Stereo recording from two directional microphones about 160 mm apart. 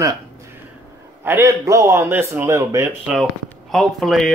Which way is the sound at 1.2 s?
15° right (ahead or behind).